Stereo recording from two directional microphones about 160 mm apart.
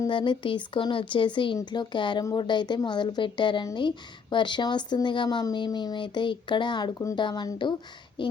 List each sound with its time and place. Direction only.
0.0 s a woman's voice: 30° left (ahead or behind)